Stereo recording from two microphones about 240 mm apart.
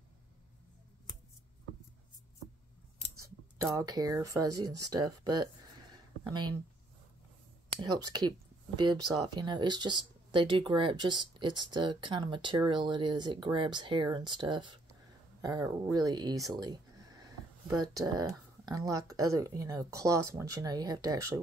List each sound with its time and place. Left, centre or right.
3.2 s speech: centre
7.8 s speech: centre
16.4 s a sound: centre
17.9 s speech: centre